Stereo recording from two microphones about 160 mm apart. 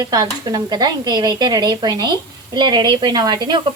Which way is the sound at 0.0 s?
25° right (ahead or behind).